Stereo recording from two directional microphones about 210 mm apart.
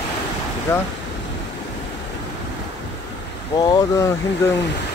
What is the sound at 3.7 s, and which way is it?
Speech, 15° left (ahead or behind).